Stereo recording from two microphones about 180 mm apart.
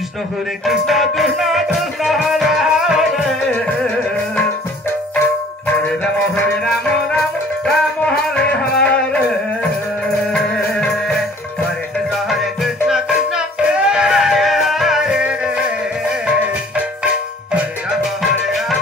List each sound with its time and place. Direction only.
0.7 s music: centre (ahead or behind)
5.2 s music: 10° left (ahead or behind)
12.3 s music: centre (ahead or behind)